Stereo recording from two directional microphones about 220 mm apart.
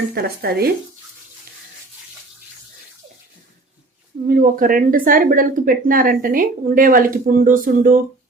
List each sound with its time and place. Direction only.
0.1 s speech: 45° right (ahead or behind)
4.3 s speech: 40° right (ahead or behind)